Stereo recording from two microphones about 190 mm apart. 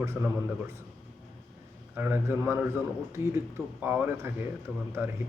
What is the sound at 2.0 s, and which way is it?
A man's voice, 10° right (ahead or behind).